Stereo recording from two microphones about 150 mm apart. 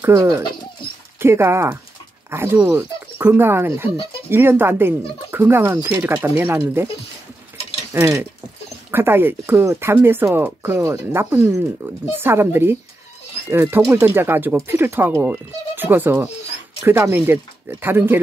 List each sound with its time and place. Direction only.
0.0 s speech: 20° right (ahead or behind)
7.9 s speech: 15° right (ahead or behind)